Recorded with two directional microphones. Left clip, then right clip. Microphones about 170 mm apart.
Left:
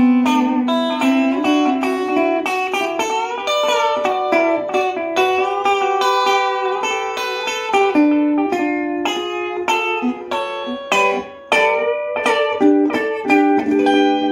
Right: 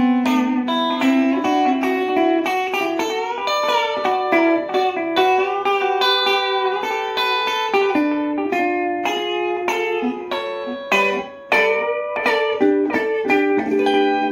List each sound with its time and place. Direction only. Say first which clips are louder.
0.0 s music: left 3 dB; 35° left (ahead or behind)
4.3 s music: even; 35° left (ahead or behind)
7.7 s music: left 7 dB; 35° left (ahead or behind)
12.5 s music: left 2 dB; 35° left (ahead or behind)